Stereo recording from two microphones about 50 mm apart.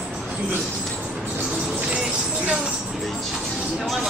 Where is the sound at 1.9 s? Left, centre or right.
Centre.